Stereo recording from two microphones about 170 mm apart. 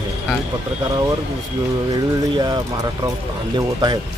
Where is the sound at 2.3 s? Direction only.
25° right (ahead or behind).